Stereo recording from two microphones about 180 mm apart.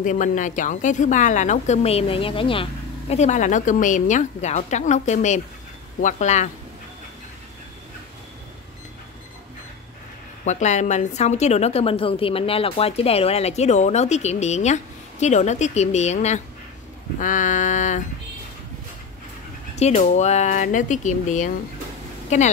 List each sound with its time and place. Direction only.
0.0 s a woman's voice: 45° left (ahead or behind)
10.4 s a woman's voice: 40° left (ahead or behind)
17.2 s a sound: 45° left (ahead or behind)
19.7 s a woman's voice: 40° left (ahead or behind)